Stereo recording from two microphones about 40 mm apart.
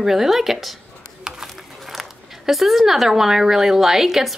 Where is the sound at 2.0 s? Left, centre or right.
Centre.